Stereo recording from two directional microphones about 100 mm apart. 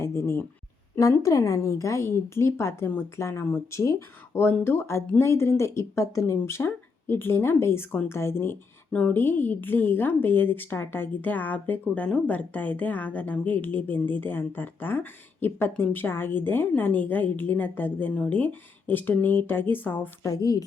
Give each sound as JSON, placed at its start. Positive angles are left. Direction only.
{"t": 0.0, "sound": "a woman's voice", "side_deg": 30}
{"t": 20.2, "sound": "speech", "side_deg": 40}